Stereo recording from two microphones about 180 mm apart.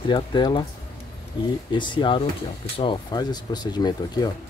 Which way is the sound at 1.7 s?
25° left (ahead or behind).